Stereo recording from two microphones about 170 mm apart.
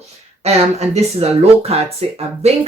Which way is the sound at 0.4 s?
40° right (ahead or behind).